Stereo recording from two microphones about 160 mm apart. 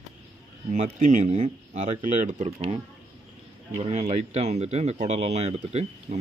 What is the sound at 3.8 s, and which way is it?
Speech, 40° right (ahead or behind).